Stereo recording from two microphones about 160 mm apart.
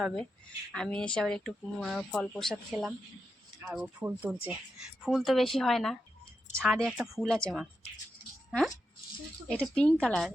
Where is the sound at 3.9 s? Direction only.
10° right (ahead or behind).